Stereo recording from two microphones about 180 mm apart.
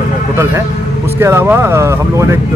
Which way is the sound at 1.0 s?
15° right (ahead or behind).